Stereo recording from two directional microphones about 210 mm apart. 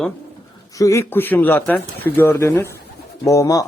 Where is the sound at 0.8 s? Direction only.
15° left (ahead or behind).